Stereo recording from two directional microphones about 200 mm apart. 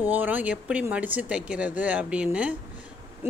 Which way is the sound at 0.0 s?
10° right (ahead or behind).